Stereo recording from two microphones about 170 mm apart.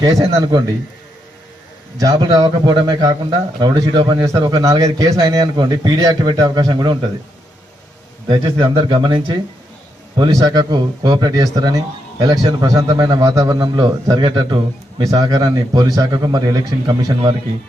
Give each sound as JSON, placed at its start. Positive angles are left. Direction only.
{"t": 0.0, "sound": "speech", "side_deg": -20}
{"t": 2.0, "sound": "speech", "side_deg": -20}
{"t": 8.3, "sound": "speech", "side_deg": -25}